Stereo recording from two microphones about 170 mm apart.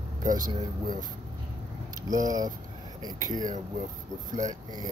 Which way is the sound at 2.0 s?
20° right (ahead or behind).